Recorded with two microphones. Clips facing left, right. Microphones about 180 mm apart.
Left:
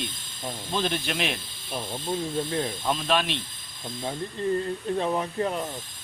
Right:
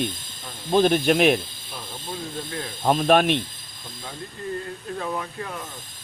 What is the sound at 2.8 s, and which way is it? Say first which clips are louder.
Speech: right 11 dB; 50° right (ahead or behind).